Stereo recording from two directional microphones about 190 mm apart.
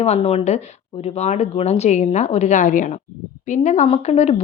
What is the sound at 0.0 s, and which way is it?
A woman's voice, 35° left (ahead or behind).